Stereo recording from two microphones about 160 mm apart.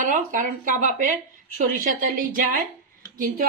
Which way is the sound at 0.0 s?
55° right (ahead or behind).